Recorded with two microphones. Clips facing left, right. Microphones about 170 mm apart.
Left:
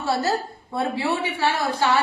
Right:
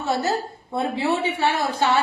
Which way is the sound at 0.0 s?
20° right (ahead or behind).